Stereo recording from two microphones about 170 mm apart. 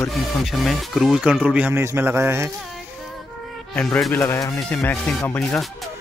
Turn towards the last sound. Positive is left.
turn(degrees=10)  # may be behind; listen again after turning